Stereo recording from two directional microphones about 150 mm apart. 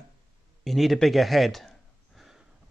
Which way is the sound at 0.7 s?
Centre (ahead or behind).